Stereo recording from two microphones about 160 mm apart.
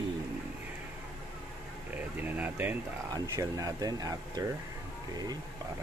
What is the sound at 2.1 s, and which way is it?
Speech, 10° right (ahead or behind).